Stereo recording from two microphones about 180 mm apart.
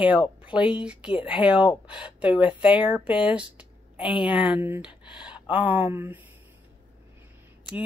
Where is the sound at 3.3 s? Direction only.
5° right (ahead or behind).